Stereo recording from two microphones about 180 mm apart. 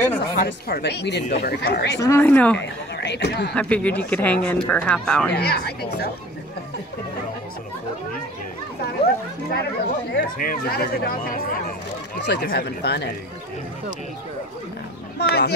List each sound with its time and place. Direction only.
0.2 s speech: 65° left (ahead or behind)
2.0 s speech: 15° left (ahead or behind)
3.0 s speech: 70° left (ahead or behind)
3.5 s speech: 5° left (ahead or behind)
5.3 s speech: 65° left (ahead or behind)
9.5 s speech: 60° left (ahead or behind)
12.3 s speech: 65° left (ahead or behind)
15.1 s speech: 65° left (ahead or behind)